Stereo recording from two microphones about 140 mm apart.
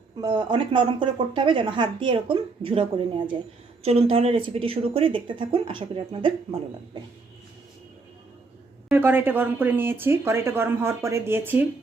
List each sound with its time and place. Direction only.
0.2 s speech: 30° right (ahead or behind)
8.9 s speech: 15° right (ahead or behind)